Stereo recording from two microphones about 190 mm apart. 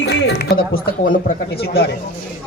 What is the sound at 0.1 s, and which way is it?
A man's voice, 60° left (ahead or behind).